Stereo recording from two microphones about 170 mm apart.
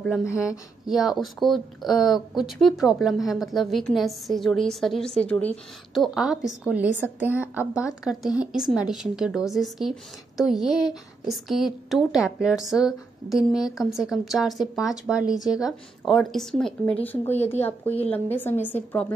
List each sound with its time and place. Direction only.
0.2 s a woman's voice: 15° left (ahead or behind)
0.5 s speech: centre (ahead or behind)
6.0 s a woman's voice: 5° right (ahead or behind)
10.7 s speech: 25° left (ahead or behind)
11.2 s a woman's voice: centre (ahead or behind)